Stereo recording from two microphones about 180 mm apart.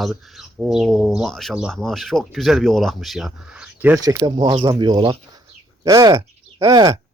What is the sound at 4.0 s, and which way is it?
Speech, 20° right (ahead or behind).